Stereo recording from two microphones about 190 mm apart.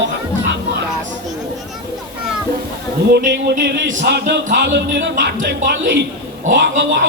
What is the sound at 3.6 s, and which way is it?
Speech, 65° right (ahead or behind).